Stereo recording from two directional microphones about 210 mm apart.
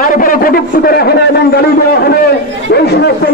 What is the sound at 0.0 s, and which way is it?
A man's voice, 40° left (ahead or behind).